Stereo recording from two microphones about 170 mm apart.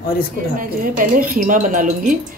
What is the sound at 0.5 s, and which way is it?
Speech, 55° right (ahead or behind).